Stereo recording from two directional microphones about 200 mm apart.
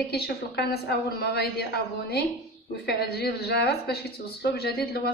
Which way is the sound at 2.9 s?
50° left (ahead or behind).